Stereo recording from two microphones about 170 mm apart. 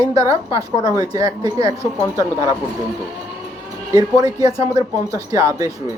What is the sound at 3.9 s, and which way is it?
A woman's voice, 20° right (ahead or behind).